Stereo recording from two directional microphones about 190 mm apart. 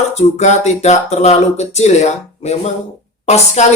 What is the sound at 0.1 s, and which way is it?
Speech, 35° left (ahead or behind).